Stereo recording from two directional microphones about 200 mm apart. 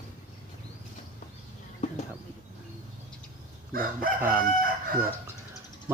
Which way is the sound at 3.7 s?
45° right (ahead or behind).